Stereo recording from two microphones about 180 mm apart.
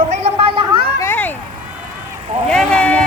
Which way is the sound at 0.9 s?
10° left (ahead or behind).